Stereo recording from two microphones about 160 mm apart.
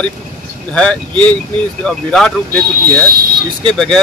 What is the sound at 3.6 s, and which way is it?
Speech, 5° left (ahead or behind).